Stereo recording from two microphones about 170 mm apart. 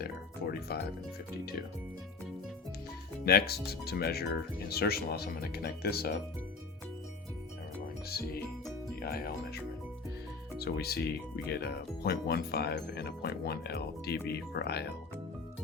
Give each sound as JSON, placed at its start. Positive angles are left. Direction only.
{"t": 0.0, "sound": "speech", "side_deg": 65}
{"t": 3.2, "sound": "speech", "side_deg": 70}
{"t": 8.1, "sound": "speech", "side_deg": 65}
{"t": 10.6, "sound": "speech", "side_deg": 70}